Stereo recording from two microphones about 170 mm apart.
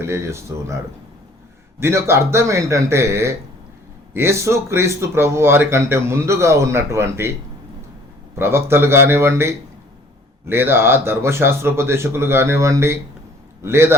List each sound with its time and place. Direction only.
0.0 s speech: 15° right (ahead or behind)
1.8 s speech: 15° right (ahead or behind)
8.4 s speech: 15° right (ahead or behind)